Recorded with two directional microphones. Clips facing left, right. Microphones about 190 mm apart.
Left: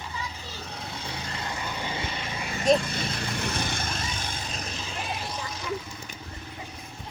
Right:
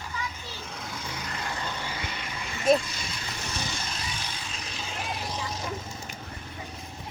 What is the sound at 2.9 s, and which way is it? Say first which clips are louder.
Vehicle: left 7 dB; 55° left (ahead or behind).